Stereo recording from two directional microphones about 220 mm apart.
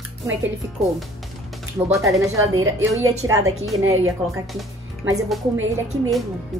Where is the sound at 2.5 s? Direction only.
65° right (ahead or behind).